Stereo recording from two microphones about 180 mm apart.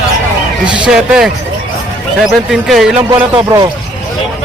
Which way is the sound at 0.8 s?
5° right (ahead or behind).